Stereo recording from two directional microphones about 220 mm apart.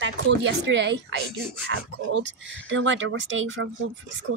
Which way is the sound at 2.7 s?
60° right (ahead or behind).